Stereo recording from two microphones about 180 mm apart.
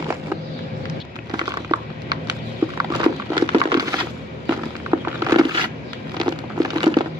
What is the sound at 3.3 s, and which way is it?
Crumpling, 25° right (ahead or behind).